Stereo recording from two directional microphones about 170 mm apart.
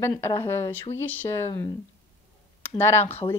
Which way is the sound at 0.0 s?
15° left (ahead or behind).